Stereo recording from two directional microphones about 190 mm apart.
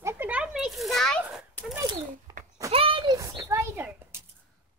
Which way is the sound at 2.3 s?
20° right (ahead or behind).